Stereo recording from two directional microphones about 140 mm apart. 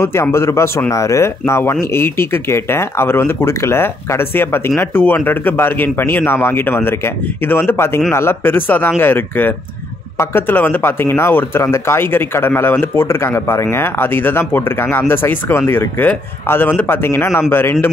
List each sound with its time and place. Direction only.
0.0 s speech: 20° left (ahead or behind)